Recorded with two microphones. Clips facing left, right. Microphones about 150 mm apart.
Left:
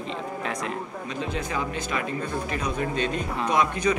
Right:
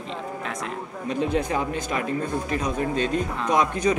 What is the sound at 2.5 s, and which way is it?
Speech, 40° right (ahead or behind).